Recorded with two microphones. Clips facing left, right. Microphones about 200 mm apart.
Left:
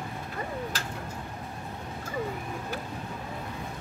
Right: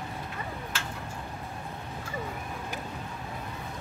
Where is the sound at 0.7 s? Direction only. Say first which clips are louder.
Left 1 dB; 40° left (ahead or behind).